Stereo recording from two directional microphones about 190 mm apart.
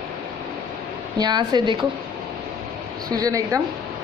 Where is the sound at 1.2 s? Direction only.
20° right (ahead or behind).